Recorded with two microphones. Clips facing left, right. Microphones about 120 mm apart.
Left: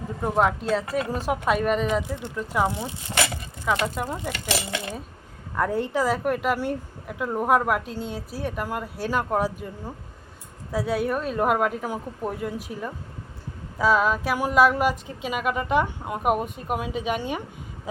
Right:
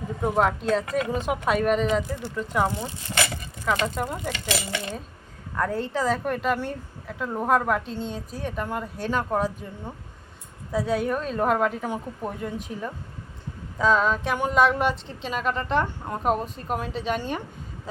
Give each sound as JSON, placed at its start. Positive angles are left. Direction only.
{"t": 0.2, "sound": "speech", "side_deg": 0}
{"t": 3.7, "sound": "a woman's voice", "side_deg": 5}